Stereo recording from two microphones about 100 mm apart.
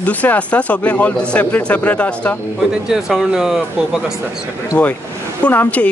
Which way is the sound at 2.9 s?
5° right (ahead or behind).